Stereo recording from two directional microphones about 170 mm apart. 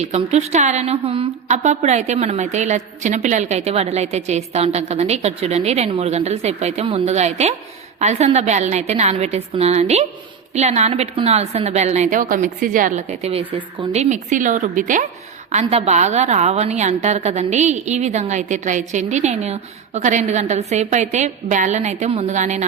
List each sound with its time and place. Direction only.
0.0 s a woman's voice: 40° right (ahead or behind)
15.6 s a woman's voice: 40° right (ahead or behind)